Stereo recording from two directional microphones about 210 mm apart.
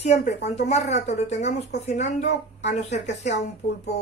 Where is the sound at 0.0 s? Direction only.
30° left (ahead or behind).